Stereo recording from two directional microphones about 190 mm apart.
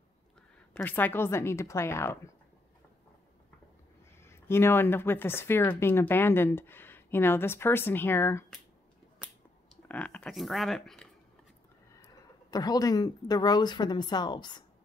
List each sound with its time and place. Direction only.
0.7 s speech: 10° left (ahead or behind)
4.2 s speech: 15° left (ahead or behind)
9.8 s speech: 5° left (ahead or behind)
12.0 s speech: 20° left (ahead or behind)